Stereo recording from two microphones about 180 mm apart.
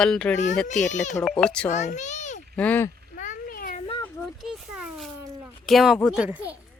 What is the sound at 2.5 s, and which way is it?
Speech, 10° left (ahead or behind).